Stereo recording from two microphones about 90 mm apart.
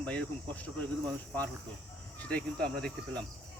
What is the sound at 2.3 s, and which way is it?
Speech, 10° left (ahead or behind).